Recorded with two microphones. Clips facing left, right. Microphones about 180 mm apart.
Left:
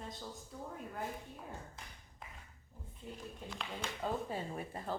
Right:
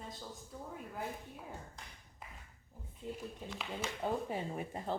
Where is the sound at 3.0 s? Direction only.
20° right (ahead or behind).